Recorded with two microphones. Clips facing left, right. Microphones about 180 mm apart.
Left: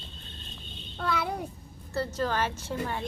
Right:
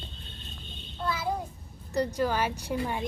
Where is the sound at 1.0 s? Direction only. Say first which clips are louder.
Even; 65° left (ahead or behind).